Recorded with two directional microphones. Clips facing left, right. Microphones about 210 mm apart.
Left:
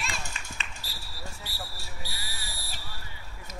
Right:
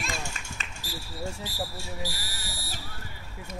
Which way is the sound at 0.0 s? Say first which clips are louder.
Right 3 dB; 45° right (ahead or behind).